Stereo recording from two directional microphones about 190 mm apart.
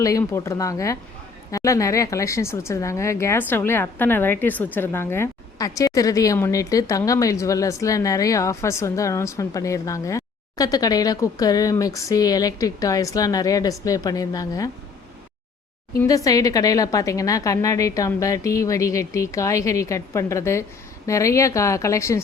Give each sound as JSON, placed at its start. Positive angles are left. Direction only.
{"t": 0.0, "sound": "speech", "side_deg": 15}
{"t": 16.0, "sound": "speech", "side_deg": 15}